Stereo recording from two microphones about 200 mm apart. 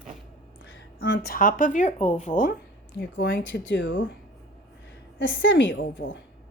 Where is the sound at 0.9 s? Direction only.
60° left (ahead or behind); by 2.6 s 40° left (ahead or behind).